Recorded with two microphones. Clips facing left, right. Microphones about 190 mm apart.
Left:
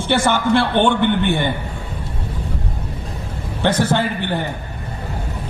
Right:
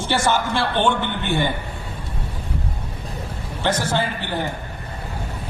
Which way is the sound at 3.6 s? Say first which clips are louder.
Left 4 dB; 60° left (ahead or behind).